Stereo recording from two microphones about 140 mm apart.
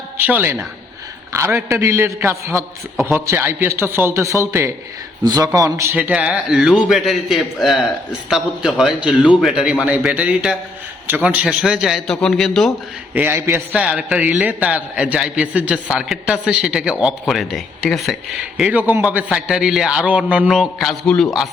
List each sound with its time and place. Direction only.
0.2 s a man's voice: 15° right (ahead or behind)
6.0 s a man's voice: 10° right (ahead or behind)
13.1 s a man's voice: 15° right (ahead or behind); by 21.5 s centre (ahead or behind)